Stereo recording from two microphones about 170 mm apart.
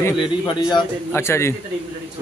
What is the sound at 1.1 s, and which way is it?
Speech, 15° left (ahead or behind).